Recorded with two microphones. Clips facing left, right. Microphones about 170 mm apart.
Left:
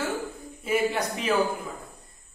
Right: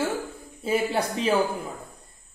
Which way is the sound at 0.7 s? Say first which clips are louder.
Right 1 dB; 30° right (ahead or behind).